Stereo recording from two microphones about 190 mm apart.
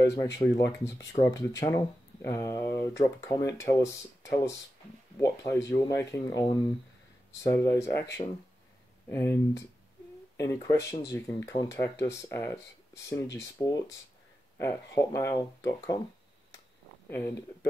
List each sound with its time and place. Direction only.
0.0 s speech: 15° left (ahead or behind)
9.1 s speech: 15° left (ahead or behind)
13.6 s speech: 15° left (ahead or behind)